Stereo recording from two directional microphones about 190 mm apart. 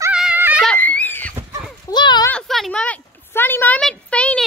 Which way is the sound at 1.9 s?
25° left (ahead or behind).